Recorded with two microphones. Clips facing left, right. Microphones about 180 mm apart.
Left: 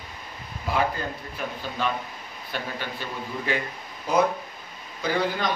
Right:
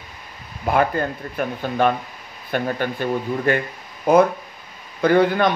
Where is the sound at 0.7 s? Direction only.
55° right (ahead or behind).